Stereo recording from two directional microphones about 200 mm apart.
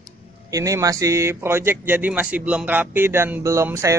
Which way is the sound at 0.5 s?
15° right (ahead or behind).